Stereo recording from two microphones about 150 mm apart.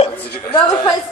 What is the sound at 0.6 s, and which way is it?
Speech, 25° left (ahead or behind).